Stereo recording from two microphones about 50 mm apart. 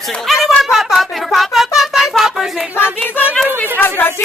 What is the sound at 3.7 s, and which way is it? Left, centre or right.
Speech, left.